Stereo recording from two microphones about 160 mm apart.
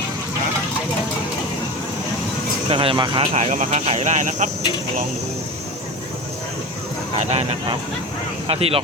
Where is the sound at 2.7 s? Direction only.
35° right (ahead or behind).